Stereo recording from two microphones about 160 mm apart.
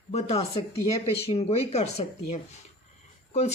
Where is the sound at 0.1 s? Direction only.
40° left (ahead or behind).